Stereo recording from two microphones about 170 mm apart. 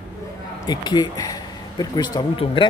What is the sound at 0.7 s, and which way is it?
A man's voice, 25° left (ahead or behind).